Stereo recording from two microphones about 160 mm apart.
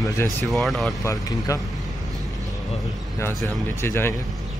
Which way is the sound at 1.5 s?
20° left (ahead or behind).